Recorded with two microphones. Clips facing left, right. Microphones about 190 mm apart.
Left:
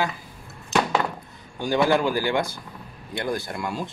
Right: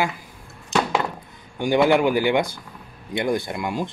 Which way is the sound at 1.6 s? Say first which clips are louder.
Right 3 dB; 20° right (ahead or behind).